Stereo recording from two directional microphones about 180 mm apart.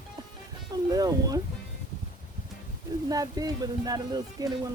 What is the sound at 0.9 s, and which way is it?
Speech, 20° right (ahead or behind).